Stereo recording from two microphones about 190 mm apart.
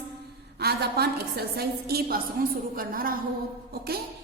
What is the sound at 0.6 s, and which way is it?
A woman's voice, 55° right (ahead or behind).